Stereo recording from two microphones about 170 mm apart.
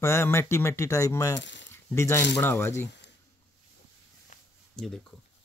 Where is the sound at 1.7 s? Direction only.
15° left (ahead or behind).